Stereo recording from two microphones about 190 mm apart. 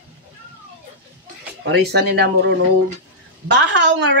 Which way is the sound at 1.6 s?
60° right (ahead or behind).